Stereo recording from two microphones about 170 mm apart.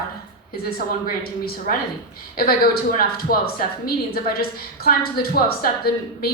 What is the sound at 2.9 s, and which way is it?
A woman's voice, 60° left (ahead or behind).